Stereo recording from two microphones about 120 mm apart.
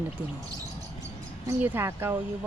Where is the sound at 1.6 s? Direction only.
15° right (ahead or behind).